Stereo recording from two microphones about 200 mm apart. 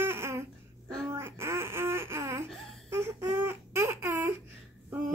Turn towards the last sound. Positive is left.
turn(degrees=-5)  # may be behind; listen again after turning